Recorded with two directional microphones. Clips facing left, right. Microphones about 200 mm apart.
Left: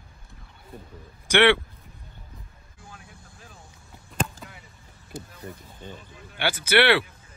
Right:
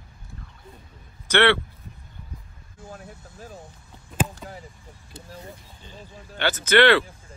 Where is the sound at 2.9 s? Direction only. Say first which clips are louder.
Right 8 dB; 40° right (ahead or behind).